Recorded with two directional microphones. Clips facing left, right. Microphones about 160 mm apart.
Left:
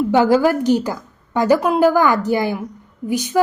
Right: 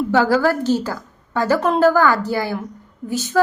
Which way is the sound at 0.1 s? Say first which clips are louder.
Left 2 dB; 15° left (ahead or behind).